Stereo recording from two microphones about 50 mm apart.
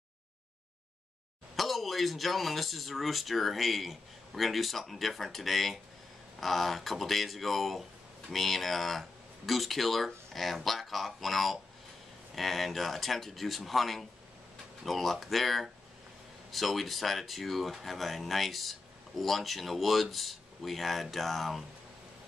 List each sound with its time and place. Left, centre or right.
1.6 s speech: centre